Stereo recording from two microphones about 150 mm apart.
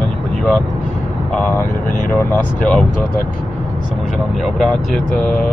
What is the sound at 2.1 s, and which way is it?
Speech, 10° left (ahead or behind).